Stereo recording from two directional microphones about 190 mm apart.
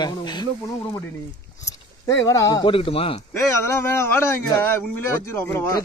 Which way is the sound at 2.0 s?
15° left (ahead or behind).